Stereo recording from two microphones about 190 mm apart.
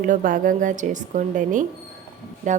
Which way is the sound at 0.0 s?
45° right (ahead or behind).